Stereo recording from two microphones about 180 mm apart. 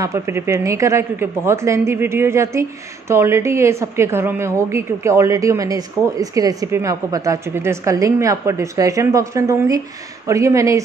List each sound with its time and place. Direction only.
0.0 s a woman's voice: 15° right (ahead or behind)